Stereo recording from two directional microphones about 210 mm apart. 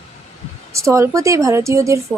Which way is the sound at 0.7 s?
15° right (ahead or behind).